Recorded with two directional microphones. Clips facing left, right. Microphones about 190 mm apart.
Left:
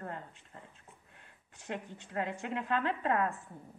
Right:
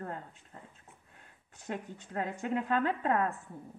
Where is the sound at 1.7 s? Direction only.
45° right (ahead or behind).